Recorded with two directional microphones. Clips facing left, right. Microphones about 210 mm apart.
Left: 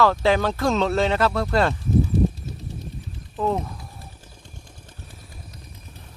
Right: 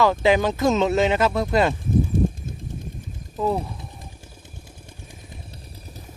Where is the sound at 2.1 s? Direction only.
50° right (ahead or behind).